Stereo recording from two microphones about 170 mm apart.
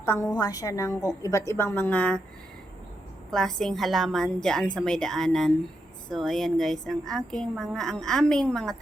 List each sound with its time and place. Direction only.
0.0 s a woman's voice: 15° left (ahead or behind)
3.3 s speech: centre (ahead or behind)